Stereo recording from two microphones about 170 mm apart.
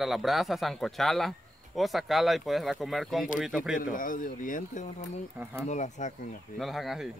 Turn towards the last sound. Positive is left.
turn(degrees=0)  # may be behind; listen again after turning